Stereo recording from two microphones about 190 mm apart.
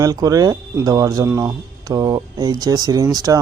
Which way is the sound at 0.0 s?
20° right (ahead or behind).